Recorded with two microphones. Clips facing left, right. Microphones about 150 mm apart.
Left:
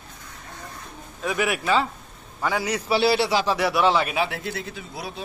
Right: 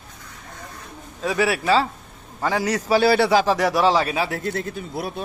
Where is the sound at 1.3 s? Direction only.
35° right (ahead or behind); by 5.3 s 55° right (ahead or behind).